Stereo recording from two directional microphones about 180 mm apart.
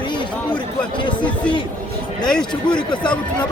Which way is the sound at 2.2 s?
5° left (ahead or behind).